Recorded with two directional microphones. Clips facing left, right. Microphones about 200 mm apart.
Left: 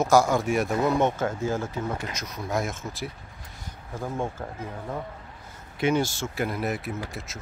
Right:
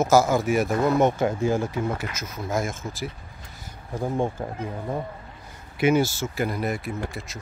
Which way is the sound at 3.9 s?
15° right (ahead or behind).